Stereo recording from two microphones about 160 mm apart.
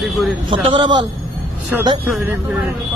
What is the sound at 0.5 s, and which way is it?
Speech, 30° right (ahead or behind).